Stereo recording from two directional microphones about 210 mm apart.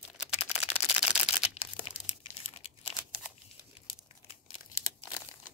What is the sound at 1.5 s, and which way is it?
Crumpling, 30° left (ahead or behind).